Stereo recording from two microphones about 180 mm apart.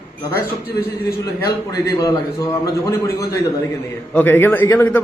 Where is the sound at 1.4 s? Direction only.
15° left (ahead or behind).